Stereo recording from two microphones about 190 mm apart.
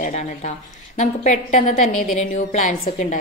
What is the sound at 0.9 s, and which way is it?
A woman's voice, 40° left (ahead or behind).